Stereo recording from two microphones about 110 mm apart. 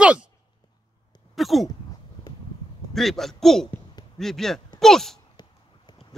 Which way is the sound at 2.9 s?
Centre (ahead or behind).